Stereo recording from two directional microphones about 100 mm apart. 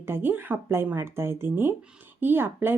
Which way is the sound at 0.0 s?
20° right (ahead or behind).